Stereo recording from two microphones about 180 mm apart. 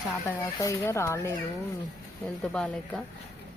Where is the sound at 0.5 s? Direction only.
15° left (ahead or behind).